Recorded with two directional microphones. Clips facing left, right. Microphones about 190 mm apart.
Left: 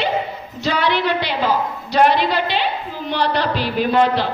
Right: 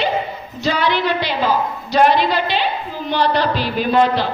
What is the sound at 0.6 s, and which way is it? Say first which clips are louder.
A woman's voice: right 1 dB; 65° left (ahead or behind).